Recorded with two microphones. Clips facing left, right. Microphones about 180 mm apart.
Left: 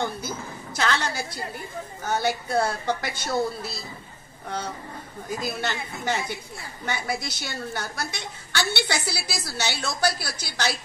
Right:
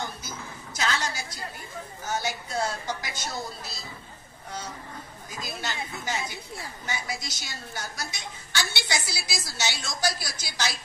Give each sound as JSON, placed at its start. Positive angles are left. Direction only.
{"t": 0.7, "sound": "a woman's voice", "side_deg": 55}
{"t": 5.3, "sound": "a woman's voice", "side_deg": 60}